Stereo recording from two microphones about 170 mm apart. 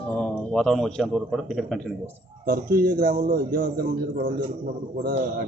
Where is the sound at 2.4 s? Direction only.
65° right (ahead or behind).